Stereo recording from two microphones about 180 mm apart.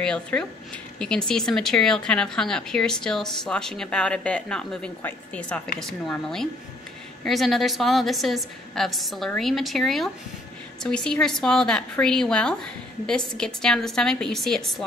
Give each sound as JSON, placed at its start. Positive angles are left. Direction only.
{"t": 0.0, "sound": "a woman's voice", "side_deg": 5}